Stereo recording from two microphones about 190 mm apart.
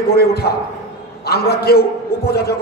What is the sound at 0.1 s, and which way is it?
A man's voice, 55° left (ahead or behind).